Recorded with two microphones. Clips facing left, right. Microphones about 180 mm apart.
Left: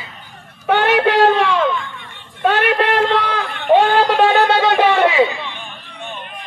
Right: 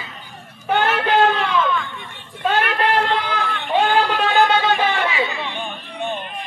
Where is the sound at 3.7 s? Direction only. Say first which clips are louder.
Left 6 dB; 60° left (ahead or behind).